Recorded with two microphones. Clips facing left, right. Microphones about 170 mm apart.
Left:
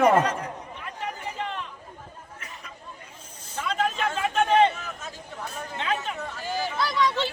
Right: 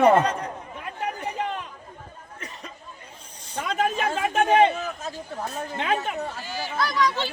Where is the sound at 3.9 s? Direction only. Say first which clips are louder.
Right 2 dB; 45° right (ahead or behind).